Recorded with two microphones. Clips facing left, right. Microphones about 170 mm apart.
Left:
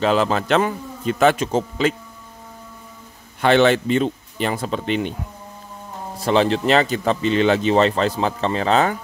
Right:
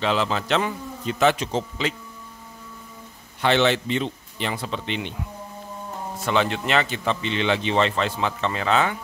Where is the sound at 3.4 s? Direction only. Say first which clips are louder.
Left 5 dB; 50° left (ahead or behind).